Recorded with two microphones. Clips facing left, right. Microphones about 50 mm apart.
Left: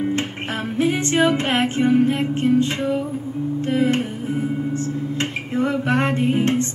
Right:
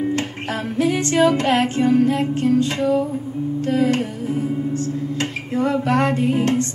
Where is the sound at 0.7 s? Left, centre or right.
Left.